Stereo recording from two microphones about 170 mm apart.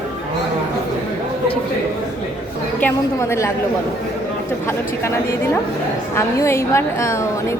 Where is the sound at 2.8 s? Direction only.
15° left (ahead or behind).